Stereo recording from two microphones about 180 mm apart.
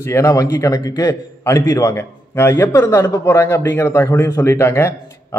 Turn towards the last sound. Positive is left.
turn(degrees=15)  # may be behind; listen again after turning